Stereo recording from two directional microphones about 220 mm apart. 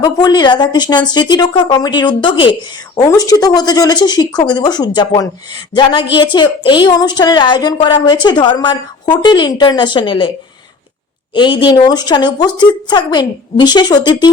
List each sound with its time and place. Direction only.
0.0 s speech: 20° left (ahead or behind)
11.3 s speech: 20° left (ahead or behind)